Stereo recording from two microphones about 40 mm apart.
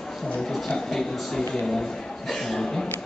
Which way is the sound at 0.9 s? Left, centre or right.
Centre.